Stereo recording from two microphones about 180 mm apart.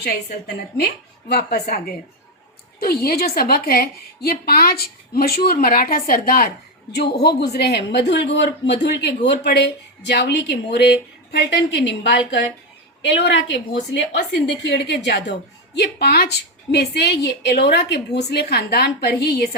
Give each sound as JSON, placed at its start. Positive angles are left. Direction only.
{"t": 0.0, "sound": "a woman's voice", "side_deg": 60}
{"t": 6.9, "sound": "a man's voice", "side_deg": 65}